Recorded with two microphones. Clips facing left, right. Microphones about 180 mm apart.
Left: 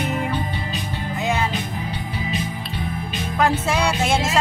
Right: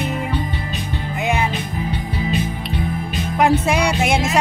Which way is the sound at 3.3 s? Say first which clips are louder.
Right 4 dB; 15° right (ahead or behind).